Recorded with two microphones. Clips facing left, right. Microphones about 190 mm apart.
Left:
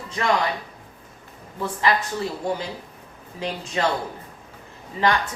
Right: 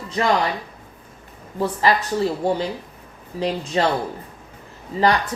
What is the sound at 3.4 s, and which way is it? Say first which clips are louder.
Speech: right 4 dB; 35° right (ahead or behind).